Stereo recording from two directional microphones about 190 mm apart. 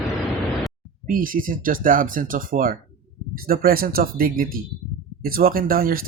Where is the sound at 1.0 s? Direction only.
45° right (ahead or behind).